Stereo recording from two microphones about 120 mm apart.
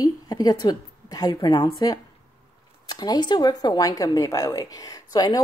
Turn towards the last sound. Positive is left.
turn(degrees=30)  # may be behind; listen again after turning